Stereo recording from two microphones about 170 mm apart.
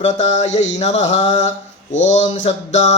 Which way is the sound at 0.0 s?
40° left (ahead or behind).